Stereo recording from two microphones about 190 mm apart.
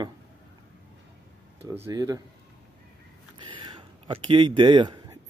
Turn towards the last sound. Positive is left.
turn(degrees=-25)  # may be behind; listen again after turning